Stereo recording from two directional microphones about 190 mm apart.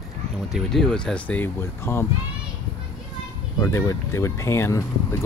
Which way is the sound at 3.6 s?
15° left (ahead or behind).